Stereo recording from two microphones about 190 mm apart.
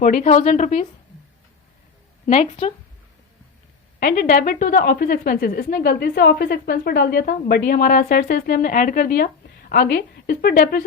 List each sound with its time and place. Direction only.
0.0 s a woman's voice: 40° left (ahead or behind)
2.2 s a woman's voice: 40° left (ahead or behind)
4.0 s a woman's voice: 50° left (ahead or behind)